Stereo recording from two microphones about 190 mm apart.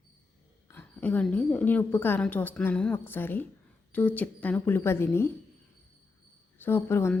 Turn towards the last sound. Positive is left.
turn(degrees=15)  # may be behind; listen again after turning